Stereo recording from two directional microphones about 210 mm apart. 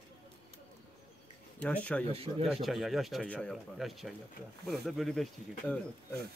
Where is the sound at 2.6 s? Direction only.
Centre (ahead or behind).